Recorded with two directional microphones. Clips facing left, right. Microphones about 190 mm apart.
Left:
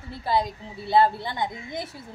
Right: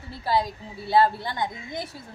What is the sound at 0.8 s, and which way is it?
Speech, 20° left (ahead or behind).